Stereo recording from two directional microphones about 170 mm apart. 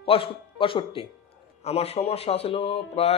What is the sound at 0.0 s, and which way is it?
Speech, 30° left (ahead or behind).